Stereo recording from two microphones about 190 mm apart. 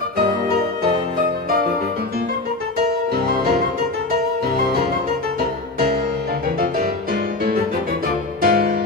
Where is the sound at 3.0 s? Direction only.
55° right (ahead or behind).